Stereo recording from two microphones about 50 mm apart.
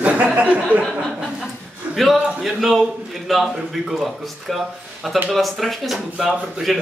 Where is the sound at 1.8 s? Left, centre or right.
Right.